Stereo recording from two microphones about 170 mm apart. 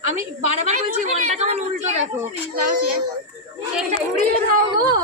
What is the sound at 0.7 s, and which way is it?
A woman's voice, 45° right (ahead or behind).